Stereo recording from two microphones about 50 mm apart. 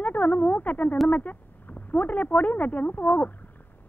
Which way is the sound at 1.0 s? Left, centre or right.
Left.